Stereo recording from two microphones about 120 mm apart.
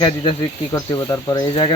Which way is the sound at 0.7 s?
30° left (ahead or behind).